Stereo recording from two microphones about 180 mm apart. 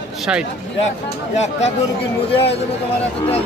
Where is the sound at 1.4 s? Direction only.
40° left (ahead or behind).